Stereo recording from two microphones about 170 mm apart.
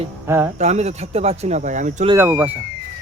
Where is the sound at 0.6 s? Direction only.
40° right (ahead or behind).